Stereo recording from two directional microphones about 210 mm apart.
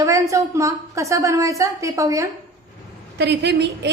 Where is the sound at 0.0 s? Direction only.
15° right (ahead or behind).